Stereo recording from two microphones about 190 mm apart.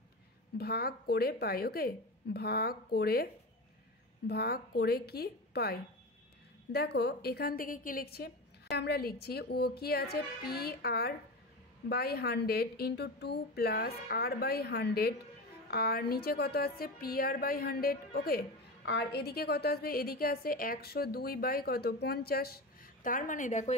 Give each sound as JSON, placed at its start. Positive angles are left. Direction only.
{"t": 0.6, "sound": "a woman's voice", "side_deg": 55}
{"t": 4.3, "sound": "a woman's voice", "side_deg": 55}
{"t": 18.9, "sound": "a woman's voice", "side_deg": 65}